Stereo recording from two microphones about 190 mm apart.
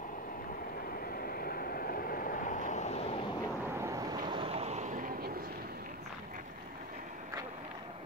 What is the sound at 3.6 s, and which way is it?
Boat, 15° right (ahead or behind).